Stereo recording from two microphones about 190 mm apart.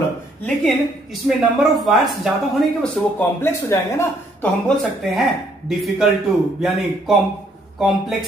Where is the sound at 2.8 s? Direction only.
10° left (ahead or behind).